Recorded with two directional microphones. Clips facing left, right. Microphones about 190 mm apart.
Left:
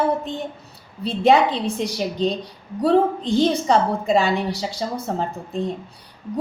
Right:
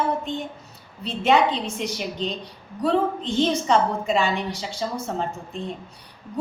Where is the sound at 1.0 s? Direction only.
35° left (ahead or behind).